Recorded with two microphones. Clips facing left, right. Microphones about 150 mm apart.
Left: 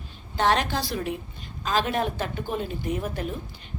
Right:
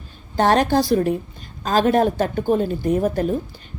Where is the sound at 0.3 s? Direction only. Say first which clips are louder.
Right 7 dB; 45° right (ahead or behind).